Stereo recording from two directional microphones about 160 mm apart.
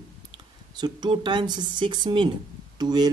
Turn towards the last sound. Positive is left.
turn(degrees=-25)  # may be behind; listen again after turning